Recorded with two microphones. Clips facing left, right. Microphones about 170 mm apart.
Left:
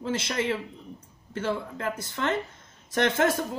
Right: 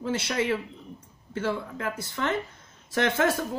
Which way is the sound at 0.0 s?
20° left (ahead or behind).